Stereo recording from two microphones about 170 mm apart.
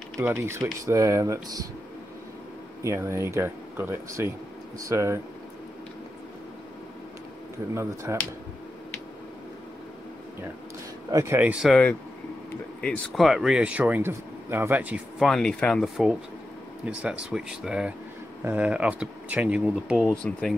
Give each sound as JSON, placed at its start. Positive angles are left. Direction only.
{"t": 0.2, "sound": "speech", "side_deg": -15}
{"t": 2.8, "sound": "speech", "side_deg": -15}
{"t": 7.7, "sound": "speech", "side_deg": -15}
{"t": 11.1, "sound": "speech", "side_deg": -15}